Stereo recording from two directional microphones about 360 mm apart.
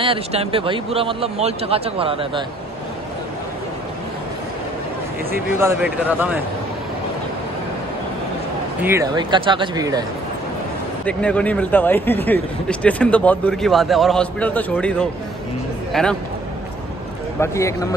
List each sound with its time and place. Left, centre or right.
0.0 s speech: centre
5.3 s speech: centre
8.8 s speech: centre
11.1 s speech: centre
17.4 s speech: centre